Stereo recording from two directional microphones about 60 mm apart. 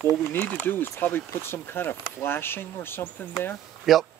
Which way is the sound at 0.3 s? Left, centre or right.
Left.